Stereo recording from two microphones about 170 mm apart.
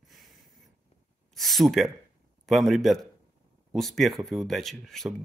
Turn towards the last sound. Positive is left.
turn(degrees=0)  # may be behind; listen again after turning